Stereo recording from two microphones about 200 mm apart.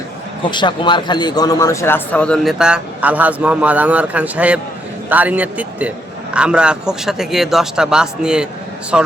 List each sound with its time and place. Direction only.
0.5 s a man's voice: 25° left (ahead or behind); by 9.1 s 5° right (ahead or behind)